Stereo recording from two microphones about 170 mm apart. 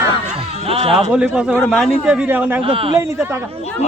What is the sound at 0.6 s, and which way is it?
Speech, 35° right (ahead or behind).